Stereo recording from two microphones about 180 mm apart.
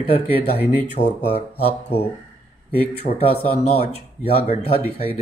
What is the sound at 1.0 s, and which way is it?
Speech, 50° left (ahead or behind).